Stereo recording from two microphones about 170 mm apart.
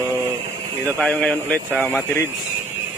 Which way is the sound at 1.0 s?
5° left (ahead or behind).